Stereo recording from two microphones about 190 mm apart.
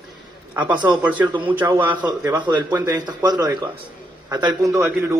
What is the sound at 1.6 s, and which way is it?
A man's voice, 20° right (ahead or behind).